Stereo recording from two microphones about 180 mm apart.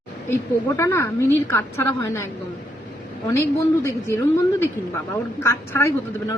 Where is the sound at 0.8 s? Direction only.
15° left (ahead or behind).